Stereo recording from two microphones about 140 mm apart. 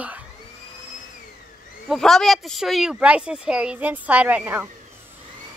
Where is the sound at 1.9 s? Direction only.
Centre (ahead or behind); by 4.7 s 15° right (ahead or behind).